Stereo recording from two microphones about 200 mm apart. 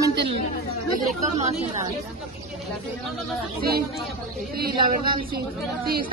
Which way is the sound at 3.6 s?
50° right (ahead or behind).